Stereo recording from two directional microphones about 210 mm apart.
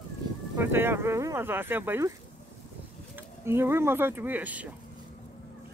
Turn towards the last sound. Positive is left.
turn(degrees=-5)  # may be behind; listen again after turning